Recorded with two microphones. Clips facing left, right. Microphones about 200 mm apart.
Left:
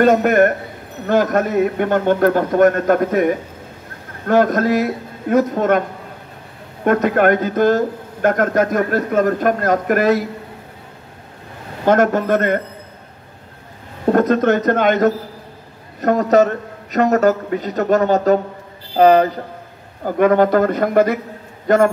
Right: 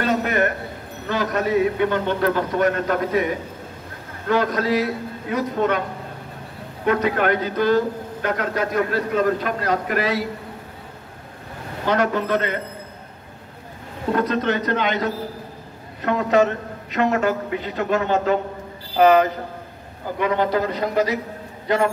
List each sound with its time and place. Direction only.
0.0 s a man's voice: 50° left (ahead or behind)
11.8 s a man's voice: 50° left (ahead or behind)
14.1 s a man's voice: 45° left (ahead or behind)
20.1 s a man's voice: 50° left (ahead or behind)